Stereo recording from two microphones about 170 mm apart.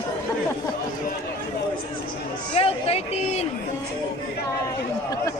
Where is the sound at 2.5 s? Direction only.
35° left (ahead or behind).